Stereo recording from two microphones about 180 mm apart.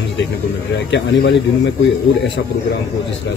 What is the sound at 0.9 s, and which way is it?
Speech, 75° left (ahead or behind).